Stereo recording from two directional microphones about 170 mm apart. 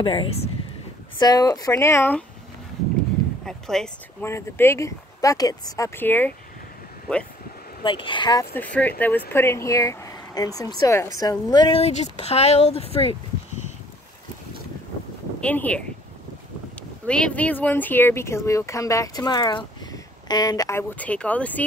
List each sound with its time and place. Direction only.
0.0 s speech: 30° left (ahead or behind); by 2.2 s 10° left (ahead or behind)
3.4 s speech: 5° left (ahead or behind)
4.2 s speech: 15° left (ahead or behind)
7.8 s speech: 30° left (ahead or behind)
8.5 s speech: 10° left (ahead or behind)
11.8 s speech: 40° left (ahead or behind)
15.4 s speech: 10° left (ahead or behind)
17.0 s speech: 5° left (ahead or behind)
21.0 s speech: 10° left (ahead or behind)